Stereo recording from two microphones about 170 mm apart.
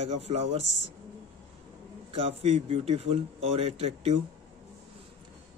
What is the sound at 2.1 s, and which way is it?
Speech, 35° right (ahead or behind).